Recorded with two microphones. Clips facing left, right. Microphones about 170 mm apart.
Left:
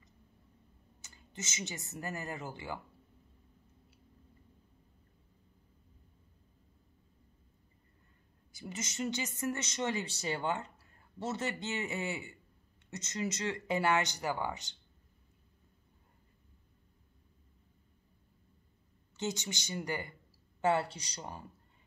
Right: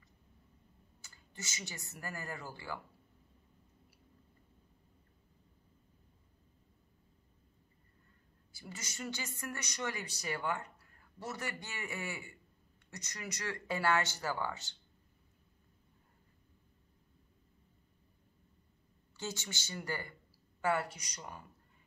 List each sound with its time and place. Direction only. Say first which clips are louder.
1.0 s speech: left 4 dB; 20° left (ahead or behind)
8.5 s speech: left 7 dB; 20° left (ahead or behind)
19.1 s speech: left 5 dB; 20° left (ahead or behind)